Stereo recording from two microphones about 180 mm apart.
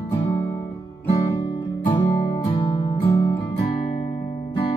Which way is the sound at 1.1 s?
30° left (ahead or behind).